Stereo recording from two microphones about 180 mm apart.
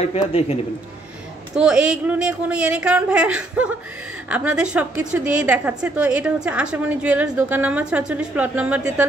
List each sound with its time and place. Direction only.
0.0 s a man's voice: 35° left (ahead or behind)
1.5 s a man's voice: 5° right (ahead or behind)